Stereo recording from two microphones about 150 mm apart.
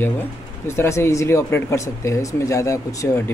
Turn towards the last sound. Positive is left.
turn(degrees=20)  # may be behind; listen again after turning